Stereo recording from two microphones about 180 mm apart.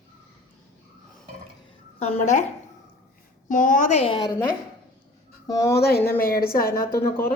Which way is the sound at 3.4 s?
45° left (ahead or behind).